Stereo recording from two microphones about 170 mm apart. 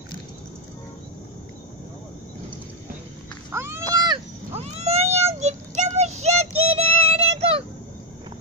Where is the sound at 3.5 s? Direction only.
15° right (ahead or behind).